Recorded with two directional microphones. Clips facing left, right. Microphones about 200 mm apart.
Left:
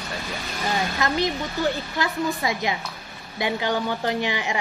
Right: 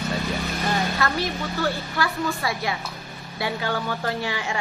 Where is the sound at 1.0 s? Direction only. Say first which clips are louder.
Left 2 dB; 20° left (ahead or behind).